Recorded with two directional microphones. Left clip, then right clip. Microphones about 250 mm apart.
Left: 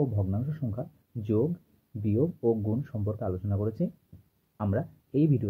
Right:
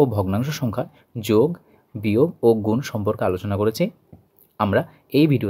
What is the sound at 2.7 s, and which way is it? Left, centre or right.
Speech, right.